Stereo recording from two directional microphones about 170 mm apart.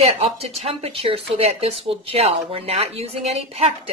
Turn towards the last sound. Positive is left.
turn(degrees=-35)  # may be behind; listen again after turning